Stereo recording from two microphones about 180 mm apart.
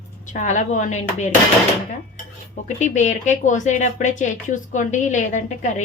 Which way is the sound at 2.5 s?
40° left (ahead or behind).